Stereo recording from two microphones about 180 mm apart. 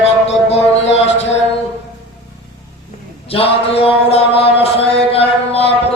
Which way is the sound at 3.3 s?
30° left (ahead or behind).